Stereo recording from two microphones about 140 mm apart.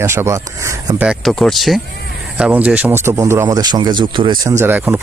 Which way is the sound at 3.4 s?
30° right (ahead or behind).